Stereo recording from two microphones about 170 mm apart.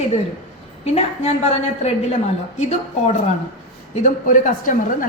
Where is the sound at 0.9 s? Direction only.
40° left (ahead or behind).